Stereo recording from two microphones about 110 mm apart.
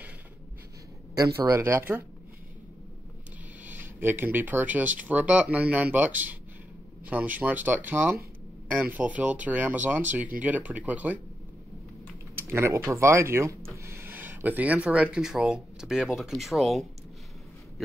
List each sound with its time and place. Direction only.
1.1 s speech: 30° right (ahead or behind)
3.6 s speech: 20° right (ahead or behind)
12.4 s speech: 20° right (ahead or behind); by 16.8 s centre (ahead or behind)